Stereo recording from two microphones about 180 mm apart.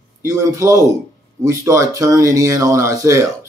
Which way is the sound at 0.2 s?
20° right (ahead or behind).